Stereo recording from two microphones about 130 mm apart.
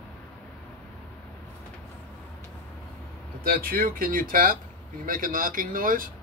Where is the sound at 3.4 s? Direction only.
90° right.